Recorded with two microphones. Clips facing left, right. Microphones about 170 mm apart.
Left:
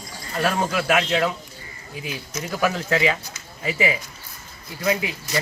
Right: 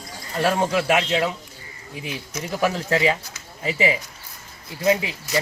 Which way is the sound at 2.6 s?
30° right (ahead or behind).